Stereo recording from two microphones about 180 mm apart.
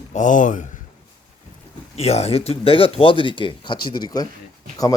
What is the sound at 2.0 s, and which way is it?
Speech, 35° left (ahead or behind).